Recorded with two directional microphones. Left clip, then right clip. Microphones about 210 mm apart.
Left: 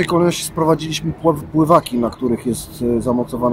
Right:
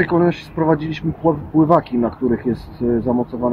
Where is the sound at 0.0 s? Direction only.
15° left (ahead or behind).